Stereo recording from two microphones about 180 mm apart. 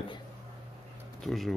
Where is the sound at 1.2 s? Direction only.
Centre (ahead or behind).